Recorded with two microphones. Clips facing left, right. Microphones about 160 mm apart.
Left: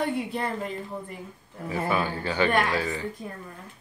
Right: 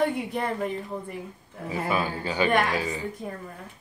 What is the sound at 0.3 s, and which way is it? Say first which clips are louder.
Speech: right 2 dB; 15° right (ahead or behind).